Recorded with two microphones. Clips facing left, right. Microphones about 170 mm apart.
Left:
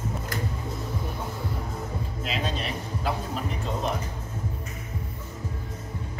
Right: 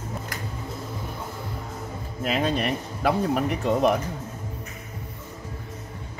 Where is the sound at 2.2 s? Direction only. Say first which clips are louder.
Right 8 dB; 55° right (ahead or behind).